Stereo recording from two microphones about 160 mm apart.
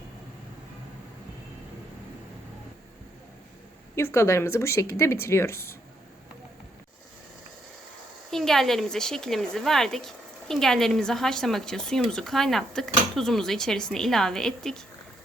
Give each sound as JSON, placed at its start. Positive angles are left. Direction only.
{"t": 3.9, "sound": "speech", "side_deg": 15}
{"t": 8.3, "sound": "speech", "side_deg": 0}